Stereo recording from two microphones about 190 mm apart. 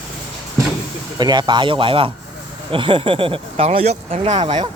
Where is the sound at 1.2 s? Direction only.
25° right (ahead or behind).